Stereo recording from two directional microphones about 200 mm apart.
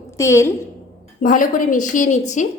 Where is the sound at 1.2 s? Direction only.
45° left (ahead or behind).